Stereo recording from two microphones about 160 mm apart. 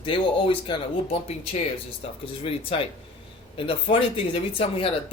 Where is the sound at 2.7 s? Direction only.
35° left (ahead or behind).